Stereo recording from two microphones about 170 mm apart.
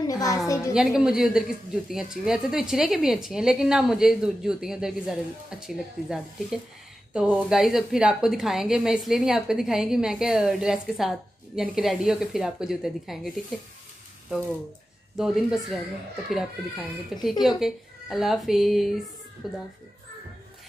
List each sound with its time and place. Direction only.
0.0 s a sound: 20° left (ahead or behind)
0.7 s a woman's voice: 5° right (ahead or behind)
15.1 s a woman's voice: centre (ahead or behind)